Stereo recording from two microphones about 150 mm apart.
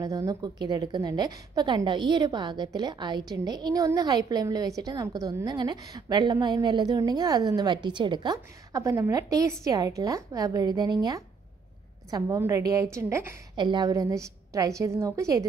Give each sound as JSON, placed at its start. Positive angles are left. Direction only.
{"t": 0.0, "sound": "a woman's voice", "side_deg": -20}
{"t": 13.6, "sound": "a woman's voice", "side_deg": -30}